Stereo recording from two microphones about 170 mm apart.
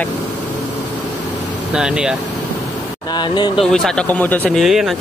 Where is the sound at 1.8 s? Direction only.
5° right (ahead or behind).